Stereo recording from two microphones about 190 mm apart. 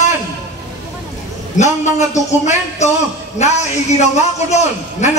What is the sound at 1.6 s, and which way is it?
A man's voice, 35° left (ahead or behind).